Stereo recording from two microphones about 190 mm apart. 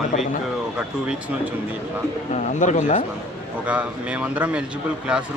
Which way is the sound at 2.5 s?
40° left (ahead or behind).